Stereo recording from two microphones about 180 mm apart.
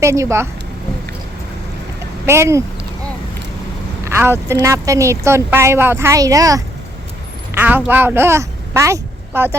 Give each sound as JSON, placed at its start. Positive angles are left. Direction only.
{"t": 0.0, "sound": "a woman's voice", "side_deg": -15}
{"t": 2.2, "sound": "a woman's voice", "side_deg": -15}
{"t": 4.0, "sound": "a woman's voice", "side_deg": -15}